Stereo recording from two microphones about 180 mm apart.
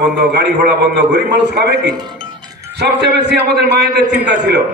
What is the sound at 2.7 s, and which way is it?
A man's voice, 70° right (ahead or behind).